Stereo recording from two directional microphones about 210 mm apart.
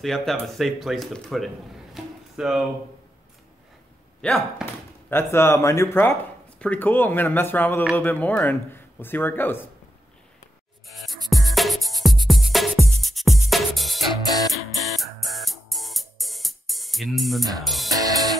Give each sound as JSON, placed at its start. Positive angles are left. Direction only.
{"t": 0.0, "sound": "speech", "side_deg": 0}
{"t": 2.0, "sound": "a sound", "side_deg": 0}
{"t": 4.2, "sound": "speech", "side_deg": 0}
{"t": 5.1, "sound": "speech", "side_deg": 10}
{"t": 11.2, "sound": "music", "side_deg": 0}
{"t": 17.8, "sound": "music", "side_deg": -15}